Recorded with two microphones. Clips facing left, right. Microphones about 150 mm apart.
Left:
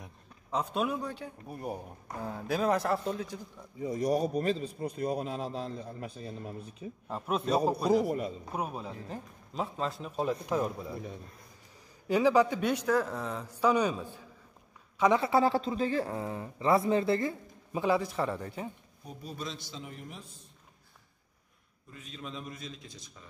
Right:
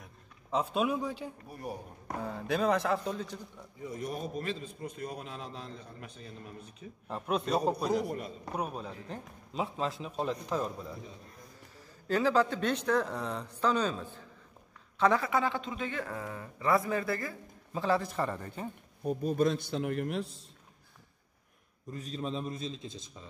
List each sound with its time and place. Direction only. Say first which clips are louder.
0.5 s a man's voice: right 1 dB; centre (ahead or behind)
3.8 s a man's voice: left 8 dB; 35° left (ahead or behind)
7.1 s a man's voice: left 1 dB; centre (ahead or behind)
12.1 s speech: left 3 dB; 15° left (ahead or behind)
15.2 s speech: left 5 dB; 35° left (ahead or behind)
17.7 s a man's voice: left 1 dB; 10° left (ahead or behind)
19.0 s a man's voice: right 12 dB; 55° right (ahead or behind); by 20.4 s 70° right (ahead or behind)
21.9 s a man's voice: right 6 dB; 35° right (ahead or behind)